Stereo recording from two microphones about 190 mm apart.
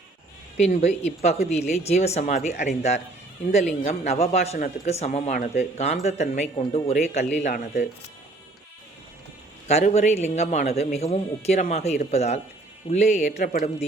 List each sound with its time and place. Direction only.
0.5 s a man's voice: 35° left (ahead or behind)
9.6 s a man's voice: 35° left (ahead or behind)